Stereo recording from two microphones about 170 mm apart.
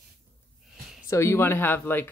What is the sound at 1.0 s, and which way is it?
Speech, 15° left (ahead or behind).